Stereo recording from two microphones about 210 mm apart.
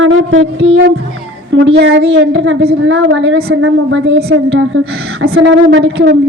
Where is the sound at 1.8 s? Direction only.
55° right (ahead or behind).